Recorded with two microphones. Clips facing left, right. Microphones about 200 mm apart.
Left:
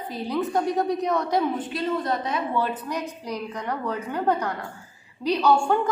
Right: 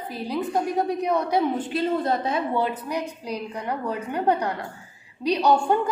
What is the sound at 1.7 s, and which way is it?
Speech, 30° right (ahead or behind).